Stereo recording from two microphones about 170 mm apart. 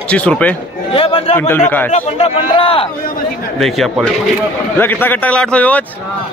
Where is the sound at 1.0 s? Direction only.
30° left (ahead or behind).